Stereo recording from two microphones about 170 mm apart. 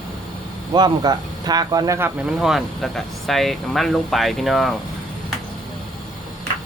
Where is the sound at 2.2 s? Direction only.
Centre (ahead or behind).